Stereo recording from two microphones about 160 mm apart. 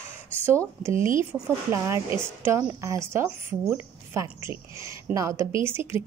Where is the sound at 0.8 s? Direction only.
15° right (ahead or behind).